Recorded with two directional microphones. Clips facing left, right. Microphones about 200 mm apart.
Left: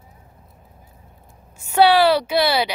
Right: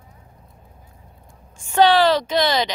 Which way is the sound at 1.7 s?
10° left (ahead or behind).